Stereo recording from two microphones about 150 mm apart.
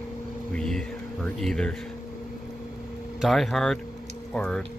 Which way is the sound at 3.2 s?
Centre (ahead or behind).